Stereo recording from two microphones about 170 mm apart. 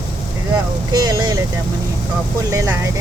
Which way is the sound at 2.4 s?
20° right (ahead or behind).